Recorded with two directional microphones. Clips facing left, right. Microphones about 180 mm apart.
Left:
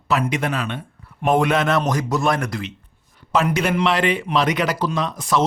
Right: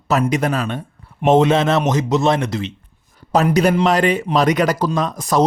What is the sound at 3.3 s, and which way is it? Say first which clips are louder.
Speech: right 5 dB; 40° right (ahead or behind).